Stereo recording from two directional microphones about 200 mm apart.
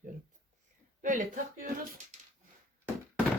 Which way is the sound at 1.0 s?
40° right (ahead or behind).